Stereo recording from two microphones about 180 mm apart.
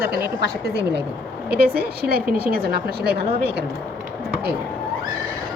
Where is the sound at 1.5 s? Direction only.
60° right (ahead or behind).